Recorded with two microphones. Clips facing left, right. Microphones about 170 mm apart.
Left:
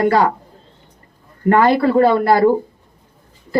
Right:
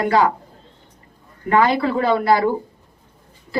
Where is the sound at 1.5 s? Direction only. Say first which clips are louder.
Left 4 dB; 50° left (ahead or behind).